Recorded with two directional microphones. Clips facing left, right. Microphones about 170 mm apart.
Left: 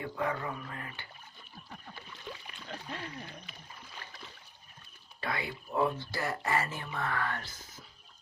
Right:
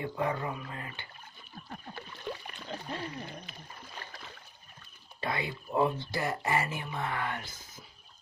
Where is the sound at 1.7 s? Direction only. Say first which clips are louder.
Right 5 dB; 55° right (ahead or behind).